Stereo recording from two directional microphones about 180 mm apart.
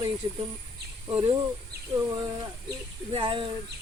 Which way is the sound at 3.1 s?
30° right (ahead or behind).